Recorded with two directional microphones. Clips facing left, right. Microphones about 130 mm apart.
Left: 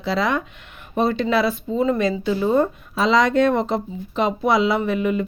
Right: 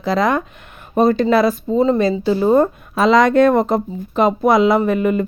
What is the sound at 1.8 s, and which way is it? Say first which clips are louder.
Speech: right 4 dB; 30° right (ahead or behind).